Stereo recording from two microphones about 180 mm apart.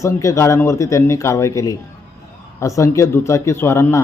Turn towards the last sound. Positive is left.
turn(degrees=15)  # may be behind; listen again after turning